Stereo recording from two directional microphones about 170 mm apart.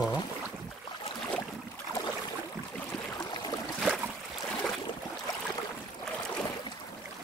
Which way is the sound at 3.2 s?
25° left (ahead or behind).